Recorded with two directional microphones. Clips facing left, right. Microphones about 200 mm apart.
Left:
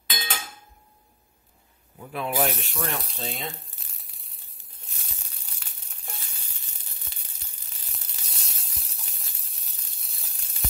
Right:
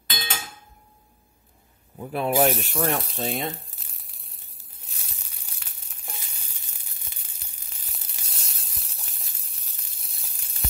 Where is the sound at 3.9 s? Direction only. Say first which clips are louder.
Right 2 dB; centre (ahead or behind).